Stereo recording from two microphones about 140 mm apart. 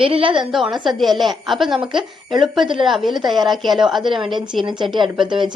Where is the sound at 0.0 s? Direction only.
40° right (ahead or behind).